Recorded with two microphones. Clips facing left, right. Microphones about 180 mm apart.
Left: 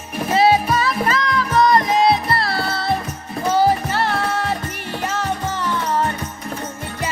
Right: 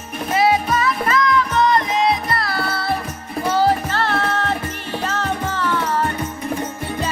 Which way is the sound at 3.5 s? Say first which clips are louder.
Left 1 dB; 15° left (ahead or behind).